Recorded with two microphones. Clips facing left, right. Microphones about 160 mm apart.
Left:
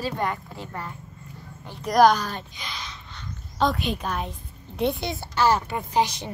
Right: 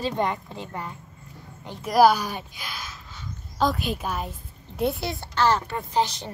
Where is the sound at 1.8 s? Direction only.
5° right (ahead or behind).